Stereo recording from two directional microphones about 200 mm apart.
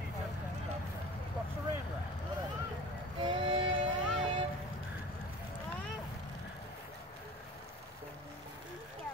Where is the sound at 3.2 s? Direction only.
25° right (ahead or behind).